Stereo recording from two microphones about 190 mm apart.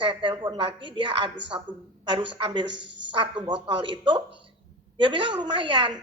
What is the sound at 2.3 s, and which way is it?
A woman's voice, 25° right (ahead or behind).